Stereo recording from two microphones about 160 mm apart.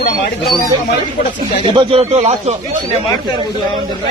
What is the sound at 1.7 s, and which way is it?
Speech, 30° right (ahead or behind).